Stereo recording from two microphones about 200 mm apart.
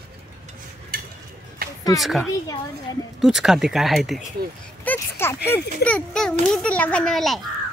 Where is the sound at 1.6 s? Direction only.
50° right (ahead or behind).